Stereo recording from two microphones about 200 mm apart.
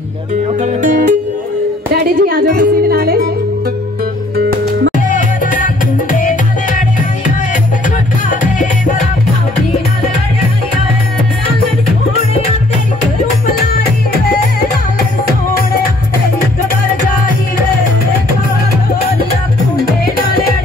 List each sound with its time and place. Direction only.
0.6 s music: 40° right (ahead or behind)
2.0 s speech: 45° right (ahead or behind)
4.4 s music: 50° right (ahead or behind)
5.1 s music: 40° left (ahead or behind)
8.3 s music: 40° left (ahead or behind)